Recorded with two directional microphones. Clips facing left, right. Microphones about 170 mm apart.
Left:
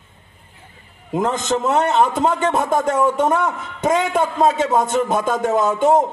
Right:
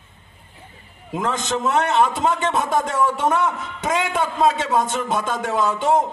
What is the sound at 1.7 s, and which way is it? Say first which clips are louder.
A man's voice: left 1 dB; 40° left (ahead or behind).